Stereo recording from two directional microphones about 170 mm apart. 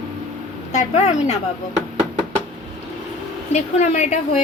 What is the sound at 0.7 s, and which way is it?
Speech, 40° left (ahead or behind).